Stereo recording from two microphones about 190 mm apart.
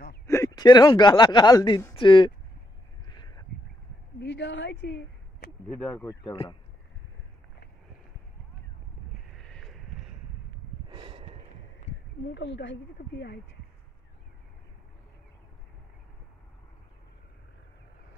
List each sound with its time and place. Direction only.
0.3 s speech: 20° left (ahead or behind)
3.1 s a sound: 20° left (ahead or behind)
4.2 s a woman's voice: 70° left (ahead or behind)
5.7 s speech: 10° left (ahead or behind)
6.2 s speech: 25° left (ahead or behind)
9.4 s a sound: centre (ahead or behind)
10.9 s snort: 30° right (ahead or behind)
12.4 s speech: 65° left (ahead or behind)